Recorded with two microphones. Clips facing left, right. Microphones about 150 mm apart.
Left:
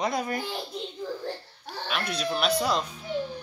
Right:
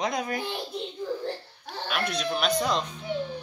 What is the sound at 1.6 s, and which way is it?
Speech, centre (ahead or behind).